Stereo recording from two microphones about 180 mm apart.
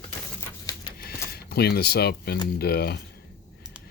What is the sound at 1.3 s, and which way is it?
Speech, 60° left (ahead or behind).